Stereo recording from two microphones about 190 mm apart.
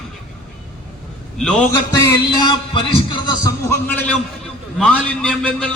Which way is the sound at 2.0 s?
20° left (ahead or behind).